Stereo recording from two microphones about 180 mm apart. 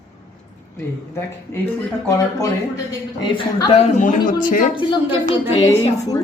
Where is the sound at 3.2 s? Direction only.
25° left (ahead or behind); by 4.7 s 45° left (ahead or behind).